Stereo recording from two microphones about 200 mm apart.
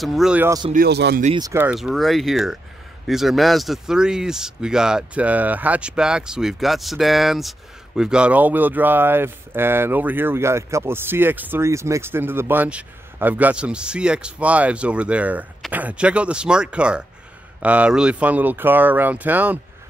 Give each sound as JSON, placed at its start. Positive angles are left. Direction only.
{"t": 0.0, "sound": "speech", "side_deg": 0}
{"t": 0.7, "sound": "a man's voice", "side_deg": -55}
{"t": 1.4, "sound": "speech", "side_deg": -10}